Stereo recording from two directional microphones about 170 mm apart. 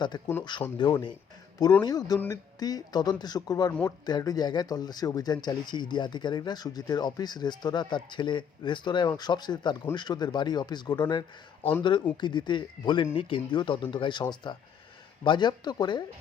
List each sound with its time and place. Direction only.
0.1 s speech: 25° left (ahead or behind)
2.1 s speech: 10° left (ahead or behind)
2.6 s speech: 20° left (ahead or behind)